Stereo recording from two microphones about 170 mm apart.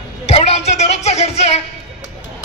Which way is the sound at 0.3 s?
40° left (ahead or behind).